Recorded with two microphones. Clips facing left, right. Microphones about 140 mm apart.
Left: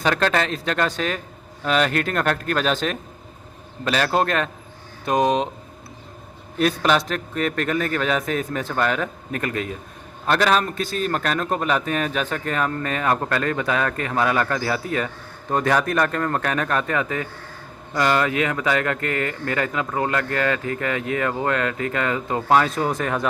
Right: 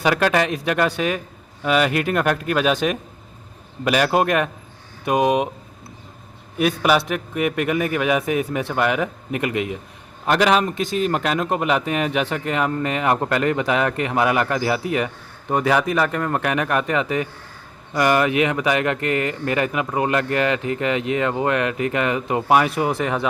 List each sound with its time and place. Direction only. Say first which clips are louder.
0.0 s a man's voice: right 2 dB; 10° right (ahead or behind)
6.6 s a man's voice: right 1 dB; 10° right (ahead or behind)